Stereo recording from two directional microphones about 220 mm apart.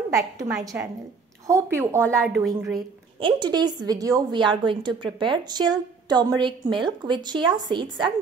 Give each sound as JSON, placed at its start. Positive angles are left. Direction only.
{"t": 0.1, "sound": "a woman's voice", "side_deg": -15}
{"t": 2.0, "sound": "a woman's voice", "side_deg": 5}
{"t": 3.2, "sound": "a woman's voice", "side_deg": -20}